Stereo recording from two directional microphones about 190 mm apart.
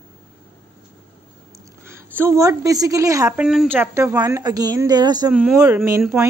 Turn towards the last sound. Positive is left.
turn(degrees=-15)  # may be behind; listen again after turning